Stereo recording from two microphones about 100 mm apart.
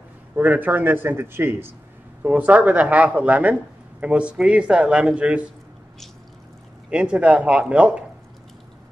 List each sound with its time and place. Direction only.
0.4 s speech: 15° right (ahead or behind)
6.9 s speech: 10° right (ahead or behind)